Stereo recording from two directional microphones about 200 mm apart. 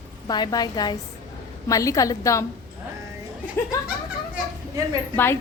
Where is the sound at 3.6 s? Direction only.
10° left (ahead or behind).